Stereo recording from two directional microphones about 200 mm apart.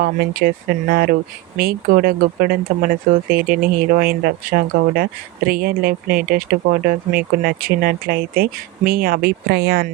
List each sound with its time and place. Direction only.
0.0 s speech: 50° right (ahead or behind)